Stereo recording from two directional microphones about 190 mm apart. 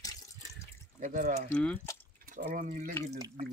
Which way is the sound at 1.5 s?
5° left (ahead or behind).